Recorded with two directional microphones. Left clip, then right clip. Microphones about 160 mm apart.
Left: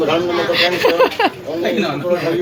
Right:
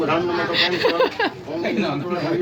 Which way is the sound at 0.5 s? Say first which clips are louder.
Left 5 dB; centre (ahead or behind).